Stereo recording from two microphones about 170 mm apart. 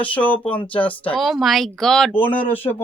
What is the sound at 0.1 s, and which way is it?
Speech, 10° left (ahead or behind).